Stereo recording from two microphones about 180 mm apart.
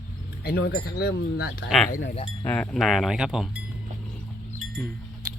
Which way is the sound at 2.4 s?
10° left (ahead or behind).